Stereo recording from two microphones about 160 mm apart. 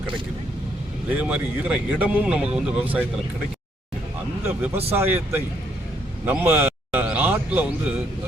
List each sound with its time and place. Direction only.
1.2 s speech: 5° right (ahead or behind)
4.4 s speech: 15° right (ahead or behind)
6.2 s a sound: 10° right (ahead or behind)